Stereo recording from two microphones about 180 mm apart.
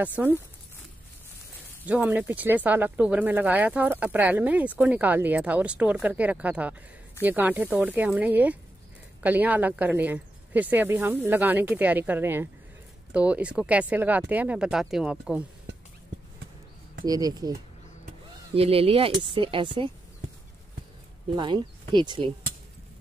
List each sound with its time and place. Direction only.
0.0 s speech: 10° right (ahead or behind)
1.9 s speech: 10° right (ahead or behind)
17.0 s speech: 20° right (ahead or behind)
18.5 s speech: 30° right (ahead or behind)
21.4 s speech: 25° right (ahead or behind)